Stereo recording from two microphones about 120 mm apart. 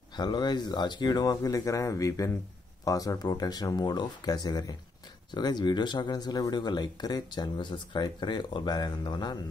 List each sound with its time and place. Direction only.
0.1 s speech: 40° left (ahead or behind)